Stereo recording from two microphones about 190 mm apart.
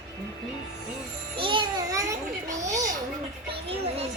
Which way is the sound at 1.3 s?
25° right (ahead or behind).